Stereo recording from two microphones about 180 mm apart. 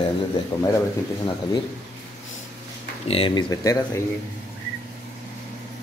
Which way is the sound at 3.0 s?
30° left (ahead or behind).